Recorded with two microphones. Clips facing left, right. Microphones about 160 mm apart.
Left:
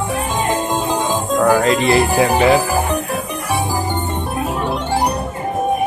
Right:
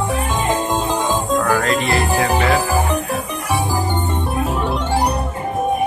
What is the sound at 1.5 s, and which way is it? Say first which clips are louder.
Music: left 4 dB; 25° left (ahead or behind).